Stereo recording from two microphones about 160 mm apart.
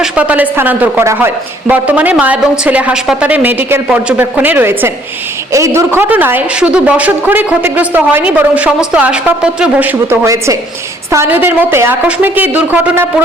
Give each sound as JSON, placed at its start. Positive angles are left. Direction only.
{"t": 0.0, "sound": "speech", "side_deg": -10}